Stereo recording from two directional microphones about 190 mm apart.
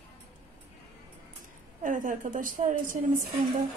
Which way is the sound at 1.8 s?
45° right (ahead or behind).